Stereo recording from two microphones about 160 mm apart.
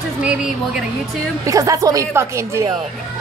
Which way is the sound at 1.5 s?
20° right (ahead or behind).